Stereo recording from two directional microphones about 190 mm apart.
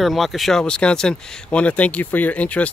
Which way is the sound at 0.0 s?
Centre (ahead or behind).